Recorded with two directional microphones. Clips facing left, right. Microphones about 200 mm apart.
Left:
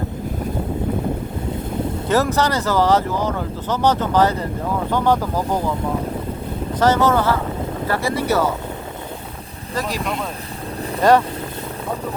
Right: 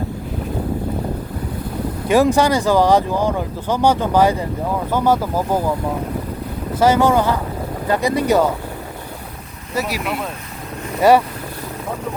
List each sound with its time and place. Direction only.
2.0 s speech: 15° right (ahead or behind)
6.7 s speech: 10° right (ahead or behind)
9.7 s speech: 10° right (ahead or behind)